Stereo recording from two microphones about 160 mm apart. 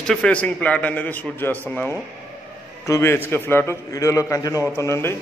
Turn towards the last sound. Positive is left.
turn(degrees=15)  # may be behind; listen again after turning